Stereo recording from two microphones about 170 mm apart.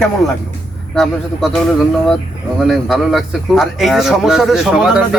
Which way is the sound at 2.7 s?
Centre (ahead or behind).